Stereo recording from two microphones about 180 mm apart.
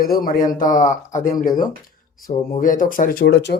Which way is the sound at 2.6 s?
50° left (ahead or behind).